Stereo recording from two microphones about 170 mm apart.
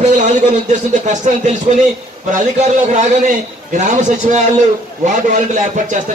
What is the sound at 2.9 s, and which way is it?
A man's voice, 45° right (ahead or behind).